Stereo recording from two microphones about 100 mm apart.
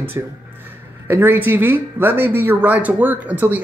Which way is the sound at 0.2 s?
25° right (ahead or behind).